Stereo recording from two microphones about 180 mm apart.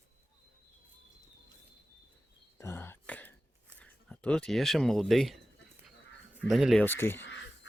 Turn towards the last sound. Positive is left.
turn(degrees=90)